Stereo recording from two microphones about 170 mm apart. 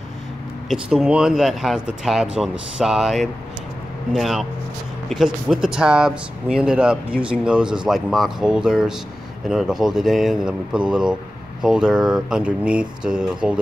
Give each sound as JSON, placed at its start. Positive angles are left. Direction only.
{"t": 0.7, "sound": "speech", "side_deg": -5}